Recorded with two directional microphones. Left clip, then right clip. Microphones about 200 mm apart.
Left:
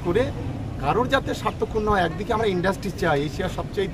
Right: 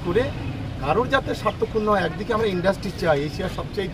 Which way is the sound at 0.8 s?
15° left (ahead or behind).